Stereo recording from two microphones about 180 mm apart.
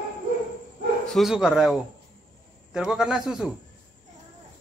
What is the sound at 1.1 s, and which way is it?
Speech, centre (ahead or behind).